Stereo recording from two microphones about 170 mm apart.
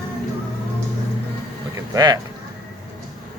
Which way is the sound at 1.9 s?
20° right (ahead or behind).